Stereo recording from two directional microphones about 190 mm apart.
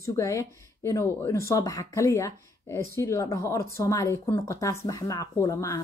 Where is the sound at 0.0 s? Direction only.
15° left (ahead or behind).